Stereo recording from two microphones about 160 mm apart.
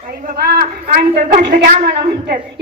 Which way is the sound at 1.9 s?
90° right.